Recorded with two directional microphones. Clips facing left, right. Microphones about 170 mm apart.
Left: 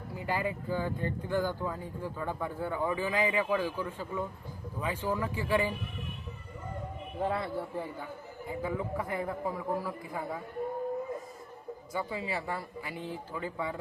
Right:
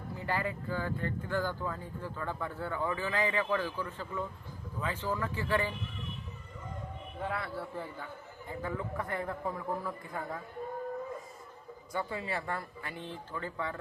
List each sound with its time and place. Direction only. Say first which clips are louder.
0.2 s speech: left 2 dB; 15° left (ahead or behind)
7.2 s speech: left 5 dB; 30° left (ahead or behind); by 10.4 s 10° left (ahead or behind)
11.9 s speech: left 1 dB; 5° left (ahead or behind)